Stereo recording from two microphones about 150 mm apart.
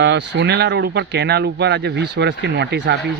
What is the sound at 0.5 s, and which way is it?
Speech, 90° right.